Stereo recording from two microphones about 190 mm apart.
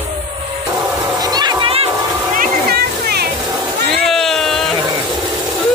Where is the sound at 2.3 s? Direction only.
50° right (ahead or behind).